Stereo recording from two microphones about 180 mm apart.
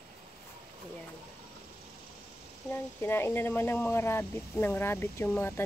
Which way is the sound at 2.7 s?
10° left (ahead or behind).